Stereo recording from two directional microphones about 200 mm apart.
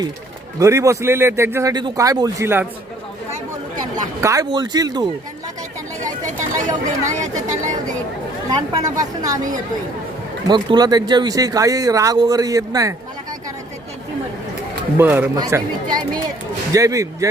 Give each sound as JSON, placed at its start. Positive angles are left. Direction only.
{"t": 0.6, "sound": "speech", "side_deg": -15}
{"t": 3.8, "sound": "speech", "side_deg": -15}
{"t": 6.7, "sound": "speech", "side_deg": -15}
{"t": 7.4, "sound": "speech", "side_deg": -40}
{"t": 8.4, "sound": "speech", "side_deg": -20}
{"t": 10.4, "sound": "speech", "side_deg": -20}
{"t": 14.9, "sound": "speech", "side_deg": -10}